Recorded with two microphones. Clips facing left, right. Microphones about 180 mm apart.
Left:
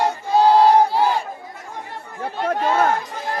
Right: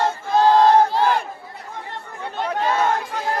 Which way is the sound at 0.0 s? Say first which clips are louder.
Left 1 dB; 15° left (ahead or behind).